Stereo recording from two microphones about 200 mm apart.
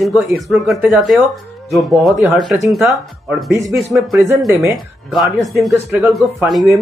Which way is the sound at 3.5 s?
15° right (ahead or behind).